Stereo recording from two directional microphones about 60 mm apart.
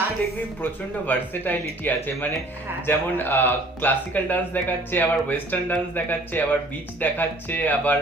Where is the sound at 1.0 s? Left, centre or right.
Left.